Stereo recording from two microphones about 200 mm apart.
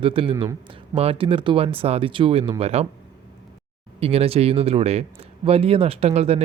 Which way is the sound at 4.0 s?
30° right (ahead or behind).